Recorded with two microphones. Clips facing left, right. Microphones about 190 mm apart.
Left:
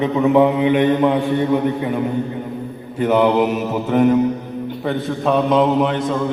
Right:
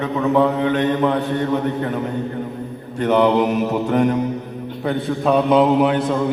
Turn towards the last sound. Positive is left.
turn(degrees=0)  # may be behind; listen again after turning